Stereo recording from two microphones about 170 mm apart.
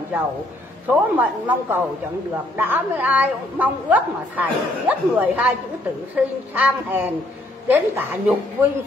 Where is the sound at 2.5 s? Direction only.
10° right (ahead or behind).